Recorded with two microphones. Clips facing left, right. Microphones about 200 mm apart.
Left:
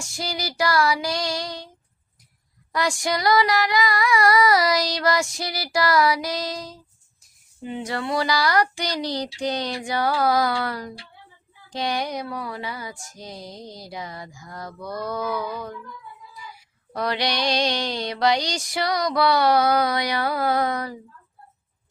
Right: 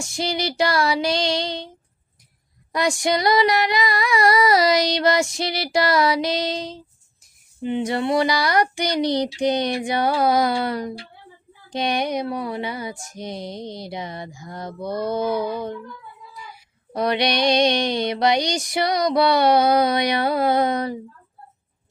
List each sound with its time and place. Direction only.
0.0 s female singing: 25° right (ahead or behind)
2.7 s female singing: 20° right (ahead or behind)
16.9 s female singing: 20° right (ahead or behind)